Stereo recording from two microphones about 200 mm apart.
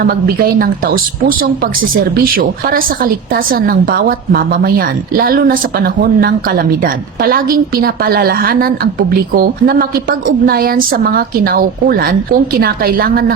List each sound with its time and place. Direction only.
0.0 s a woman's voice: 50° right (ahead or behind)